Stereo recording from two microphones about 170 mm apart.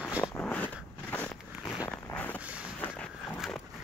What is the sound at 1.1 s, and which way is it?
Biting, 10° left (ahead or behind).